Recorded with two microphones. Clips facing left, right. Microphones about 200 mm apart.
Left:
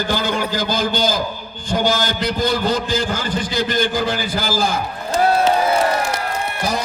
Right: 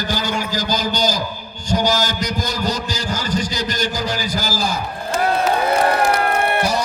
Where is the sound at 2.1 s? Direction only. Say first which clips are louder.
Left 4 dB; 45° right (ahead or behind).